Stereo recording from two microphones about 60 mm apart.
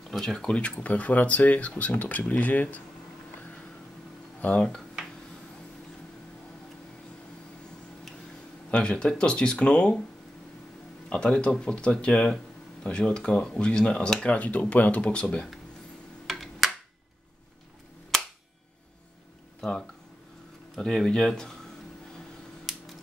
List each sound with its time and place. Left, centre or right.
0.1 s speech: centre
0.6 s speech: left
4.4 s speech: left
8.6 s speech: centre
11.1 s speech: centre
16.3 s a sound: centre
20.7 s speech: centre
22.7 s a sound: centre